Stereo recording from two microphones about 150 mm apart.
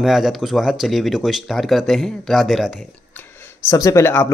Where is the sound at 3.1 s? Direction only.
20° left (ahead or behind).